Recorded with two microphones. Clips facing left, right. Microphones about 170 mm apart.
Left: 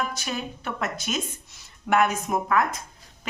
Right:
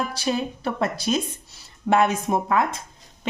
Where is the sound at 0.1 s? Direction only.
30° right (ahead or behind).